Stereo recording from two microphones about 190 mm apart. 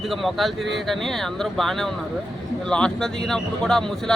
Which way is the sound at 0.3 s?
Centre (ahead or behind).